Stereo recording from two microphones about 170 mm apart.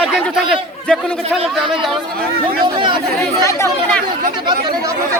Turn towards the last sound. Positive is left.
turn(degrees=15)  # may be behind; listen again after turning